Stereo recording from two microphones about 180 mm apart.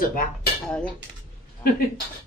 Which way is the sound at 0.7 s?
5° left (ahead or behind).